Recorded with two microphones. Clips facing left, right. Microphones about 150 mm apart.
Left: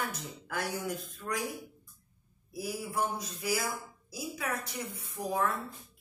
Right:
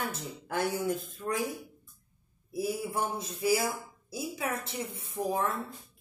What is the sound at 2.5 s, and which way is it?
Speech, 25° right (ahead or behind).